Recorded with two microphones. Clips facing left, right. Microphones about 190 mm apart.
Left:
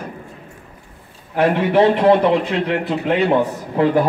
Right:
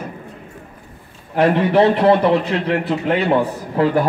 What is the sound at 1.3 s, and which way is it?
A man's voice, 10° left (ahead or behind).